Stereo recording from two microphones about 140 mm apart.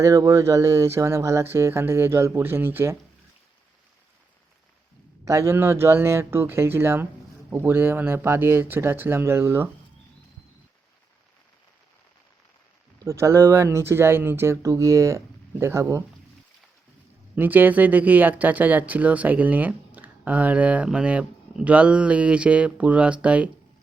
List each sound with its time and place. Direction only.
0.0 s speech: 25° right (ahead or behind)
5.2 s speech: 20° right (ahead or behind)
13.1 s speech: 20° right (ahead or behind)
17.3 s speech: 15° right (ahead or behind)